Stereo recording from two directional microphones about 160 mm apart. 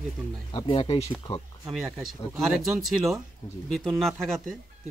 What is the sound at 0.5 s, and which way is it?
Speech, 35° left (ahead or behind).